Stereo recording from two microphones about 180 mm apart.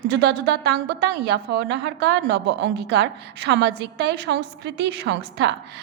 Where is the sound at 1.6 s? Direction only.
70° right (ahead or behind).